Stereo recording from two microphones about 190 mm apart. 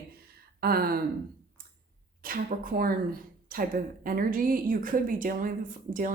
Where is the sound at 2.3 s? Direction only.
50° right (ahead or behind).